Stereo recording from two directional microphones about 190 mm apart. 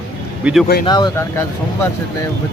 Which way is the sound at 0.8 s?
20° left (ahead or behind).